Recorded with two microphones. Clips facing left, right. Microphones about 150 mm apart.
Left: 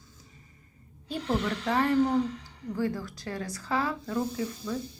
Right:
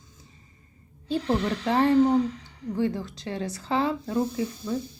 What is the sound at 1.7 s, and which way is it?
Speech, 30° right (ahead or behind).